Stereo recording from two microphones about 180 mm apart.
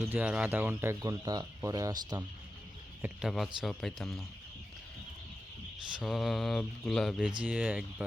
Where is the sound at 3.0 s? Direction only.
Centre (ahead or behind).